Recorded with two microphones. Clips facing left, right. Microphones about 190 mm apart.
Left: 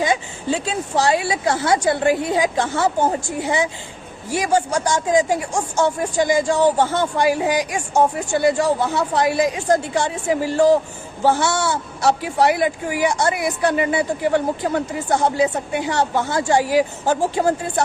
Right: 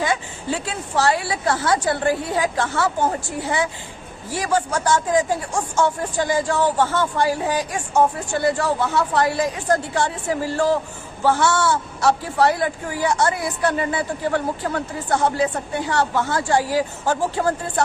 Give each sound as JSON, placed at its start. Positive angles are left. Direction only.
{"t": 0.0, "sound": "a woman's voice", "side_deg": 20}